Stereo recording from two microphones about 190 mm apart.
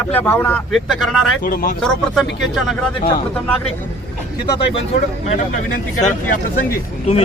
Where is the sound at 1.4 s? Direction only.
50° left (ahead or behind).